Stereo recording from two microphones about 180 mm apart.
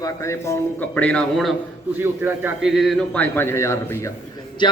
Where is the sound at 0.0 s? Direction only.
15° left (ahead or behind).